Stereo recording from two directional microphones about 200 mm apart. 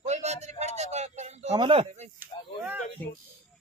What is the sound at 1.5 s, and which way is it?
Speech, 25° right (ahead or behind).